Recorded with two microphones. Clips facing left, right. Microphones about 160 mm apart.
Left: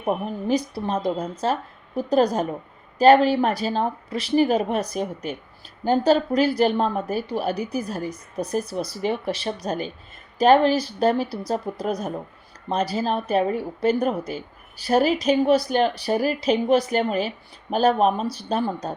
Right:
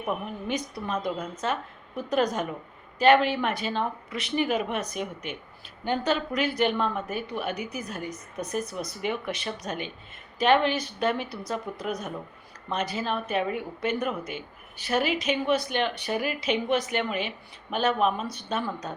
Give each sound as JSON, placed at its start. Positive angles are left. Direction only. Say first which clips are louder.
{"t": 0.0, "sound": "speech", "louder": "left 6 dB", "side_deg": 35}